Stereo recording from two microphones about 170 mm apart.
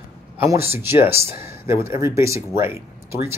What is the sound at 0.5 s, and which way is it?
Speech, 15° right (ahead or behind).